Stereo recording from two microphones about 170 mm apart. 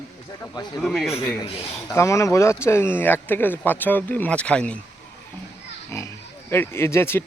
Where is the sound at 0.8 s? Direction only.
Centre (ahead or behind).